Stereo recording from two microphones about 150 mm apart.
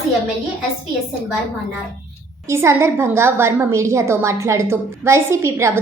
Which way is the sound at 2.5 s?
20° right (ahead or behind).